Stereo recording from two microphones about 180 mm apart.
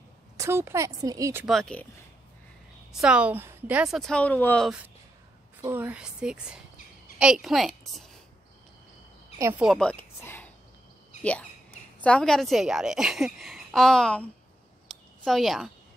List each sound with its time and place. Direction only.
0.4 s speech: 15° right (ahead or behind)
1.4 s a woman's voice: centre (ahead or behind)
2.9 s a woman's voice: 5° right (ahead or behind)
5.6 s a woman's voice: 10° right (ahead or behind)
9.4 s speech: 15° right (ahead or behind)
9.7 s a sound: 5° left (ahead or behind)
12.0 s a woman's voice: 5° left (ahead or behind)
14.9 s a sound: centre (ahead or behind)